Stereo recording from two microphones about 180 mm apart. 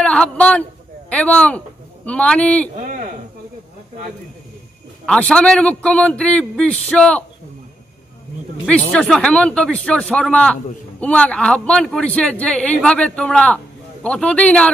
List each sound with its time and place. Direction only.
0.0 s a man's voice: 5° left (ahead or behind)
2.8 s a sound: 50° right (ahead or behind)
5.0 s speech: 5° left (ahead or behind)
8.6 s speech: 5° left (ahead or behind)